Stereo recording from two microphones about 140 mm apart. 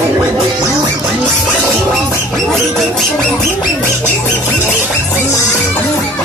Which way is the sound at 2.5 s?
Centre (ahead or behind).